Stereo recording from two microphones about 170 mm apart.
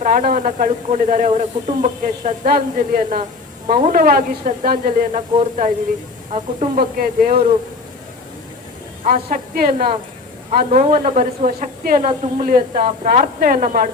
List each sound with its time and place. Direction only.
0.0 s speech: 55° right (ahead or behind)
7.0 s a woman's voice: 55° right (ahead or behind)
9.0 s a woman's voice: 55° right (ahead or behind)